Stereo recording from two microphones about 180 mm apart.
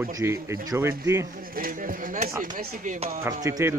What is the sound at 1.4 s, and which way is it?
Speech, 50° right (ahead or behind).